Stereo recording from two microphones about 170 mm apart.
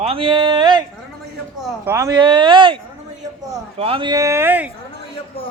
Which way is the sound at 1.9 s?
20° right (ahead or behind).